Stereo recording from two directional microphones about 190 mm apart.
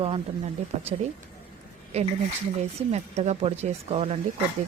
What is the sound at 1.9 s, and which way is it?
Speech, 35° right (ahead or behind).